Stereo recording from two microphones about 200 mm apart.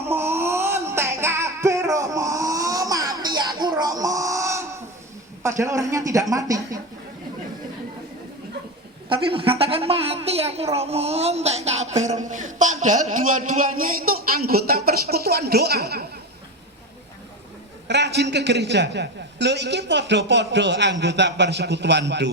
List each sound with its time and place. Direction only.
0.1 s music: 10° right (ahead or behind)
5.4 s a woman's voice: 15° right (ahead or behind)
9.0 s a woman's voice: 25° right (ahead or behind)
13.3 s speech: 45° right (ahead or behind)
17.8 s a man's voice: 60° right (ahead or behind)